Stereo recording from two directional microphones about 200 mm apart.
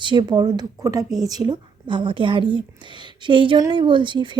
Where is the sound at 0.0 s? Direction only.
20° right (ahead or behind).